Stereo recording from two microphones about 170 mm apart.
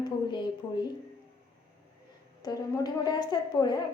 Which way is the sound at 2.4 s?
20° left (ahead or behind).